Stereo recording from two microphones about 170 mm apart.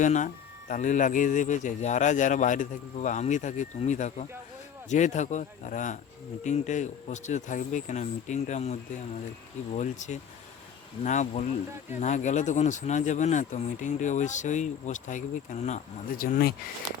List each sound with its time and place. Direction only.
0.0 s speech: 45° left (ahead or behind)